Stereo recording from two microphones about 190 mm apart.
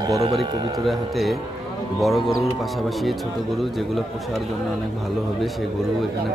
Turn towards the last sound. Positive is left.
turn(degrees=0)  # may be behind; listen again after turning